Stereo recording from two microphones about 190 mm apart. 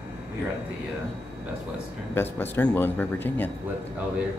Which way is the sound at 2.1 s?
10° left (ahead or behind).